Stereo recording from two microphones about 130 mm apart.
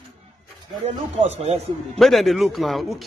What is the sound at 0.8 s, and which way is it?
Speech, 55° right (ahead or behind).